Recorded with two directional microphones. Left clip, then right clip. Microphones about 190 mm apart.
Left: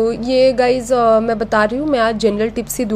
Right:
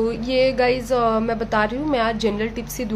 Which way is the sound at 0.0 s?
15° left (ahead or behind).